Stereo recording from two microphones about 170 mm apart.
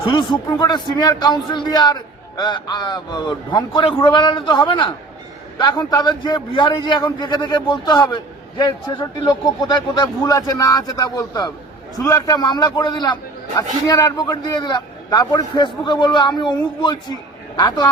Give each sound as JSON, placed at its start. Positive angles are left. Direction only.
{"t": 0.0, "sound": "a man's voice", "side_deg": 25}